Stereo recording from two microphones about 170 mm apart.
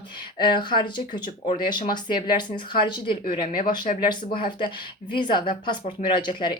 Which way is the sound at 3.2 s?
55° left (ahead or behind).